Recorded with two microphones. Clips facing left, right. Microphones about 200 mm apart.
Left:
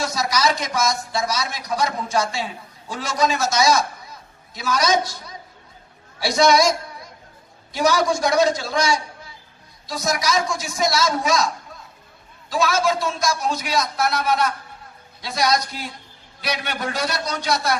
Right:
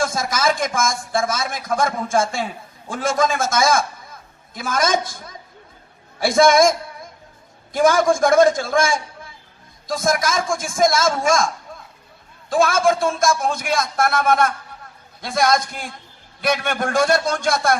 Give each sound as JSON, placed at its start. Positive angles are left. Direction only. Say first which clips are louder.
{"t": 0.0, "sound": "a man's voice", "louder": "right 1 dB", "side_deg": -50}